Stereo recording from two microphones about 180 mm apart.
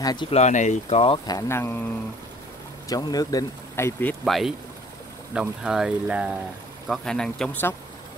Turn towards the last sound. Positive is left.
turn(degrees=10)  # may be behind; listen again after turning